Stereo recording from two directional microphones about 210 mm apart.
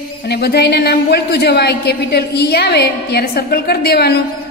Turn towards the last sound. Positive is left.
turn(degrees=50)  # may be behind; listen again after turning